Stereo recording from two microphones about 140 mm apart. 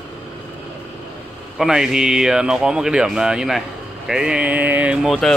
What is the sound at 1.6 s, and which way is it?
Speech, 5° right (ahead or behind).